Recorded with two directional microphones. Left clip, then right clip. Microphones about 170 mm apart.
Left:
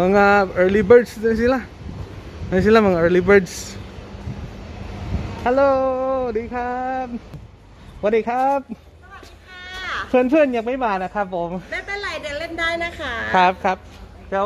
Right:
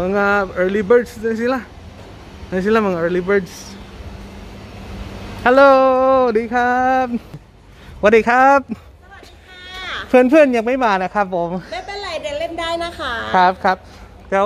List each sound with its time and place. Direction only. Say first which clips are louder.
0.0 s speech: left 2 dB; 20° left (ahead or behind)
5.4 s a sound: right 7 dB; 45° right (ahead or behind); by 7.1 s 65° right (ahead or behind)
8.0 s a man's voice: right 7 dB; 40° right (ahead or behind)
9.6 s a sound: even; 15° right (ahead or behind)
10.1 s a woman's voice: right 5 dB; 25° right (ahead or behind)
11.7 s a sound: right 1 dB; 5° right (ahead or behind)
12.5 s a woman's voice: even; 20° right (ahead or behind)
13.0 s a man's voice: right 2 dB; 30° right (ahead or behind)
13.4 s a woman's voice: right 3 dB; 15° right (ahead or behind)
14.3 s a man's voice: right 5 dB; 35° right (ahead or behind)